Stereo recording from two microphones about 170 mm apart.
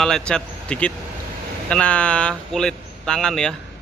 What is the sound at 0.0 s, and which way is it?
Speech, 5° left (ahead or behind).